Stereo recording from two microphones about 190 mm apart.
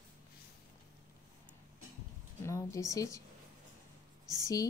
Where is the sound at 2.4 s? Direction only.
15° left (ahead or behind).